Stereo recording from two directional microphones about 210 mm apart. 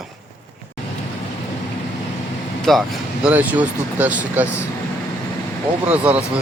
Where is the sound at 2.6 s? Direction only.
Centre (ahead or behind).